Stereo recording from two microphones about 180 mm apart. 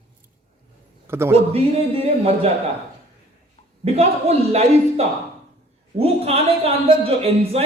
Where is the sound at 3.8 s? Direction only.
35° right (ahead or behind).